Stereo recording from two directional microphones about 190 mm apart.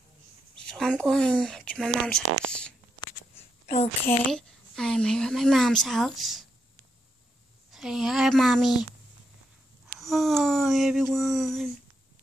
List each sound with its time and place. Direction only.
0.6 s a woman's voice: 5° left (ahead or behind)
3.6 s a woman's voice: 35° left (ahead or behind)
4.1 s a woman's voice: 5° left (ahead or behind)
7.7 s a woman's voice: centre (ahead or behind)
9.8 s a woman's voice: centre (ahead or behind)